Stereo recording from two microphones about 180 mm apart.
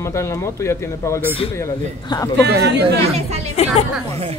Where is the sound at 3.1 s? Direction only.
35° right (ahead or behind).